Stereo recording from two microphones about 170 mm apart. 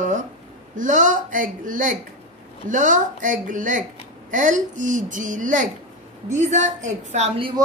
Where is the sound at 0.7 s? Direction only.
50° right (ahead or behind).